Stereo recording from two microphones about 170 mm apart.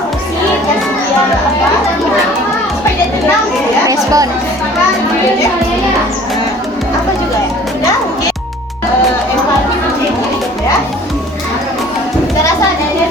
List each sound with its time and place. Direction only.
3.8 s music: 20° right (ahead or behind)